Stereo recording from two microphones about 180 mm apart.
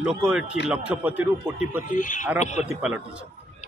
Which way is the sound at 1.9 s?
45° left (ahead or behind).